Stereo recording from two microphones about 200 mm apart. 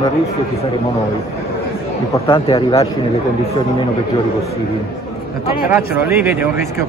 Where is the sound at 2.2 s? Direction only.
25° left (ahead or behind).